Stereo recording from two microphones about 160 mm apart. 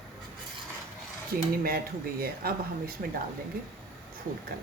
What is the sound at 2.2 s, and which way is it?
Speech, 70° right (ahead or behind).